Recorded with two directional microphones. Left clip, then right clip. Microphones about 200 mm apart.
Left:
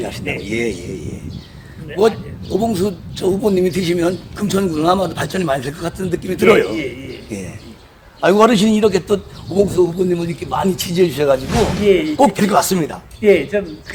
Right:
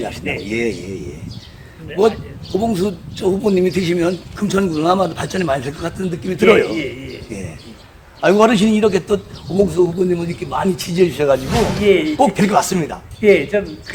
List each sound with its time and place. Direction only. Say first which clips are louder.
0.4 s speech: even; 40° left (ahead or behind)
6.7 s a man's voice: even; 10° left (ahead or behind)
7.3 s a man's voice: left 1 dB; 45° left (ahead or behind)
11.8 s speech: even; 15° left (ahead or behind)
12.1 s a man's voice: left 1 dB; 45° left (ahead or behind)
13.2 s speech: even; 10° left (ahead or behind)